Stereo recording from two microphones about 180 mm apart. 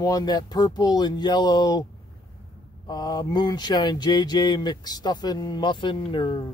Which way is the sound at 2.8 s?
25° left (ahead or behind).